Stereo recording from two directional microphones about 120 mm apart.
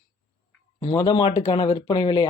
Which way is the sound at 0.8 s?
40° left (ahead or behind).